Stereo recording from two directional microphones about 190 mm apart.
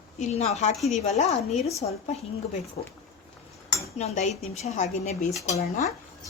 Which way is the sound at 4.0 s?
35° left (ahead or behind).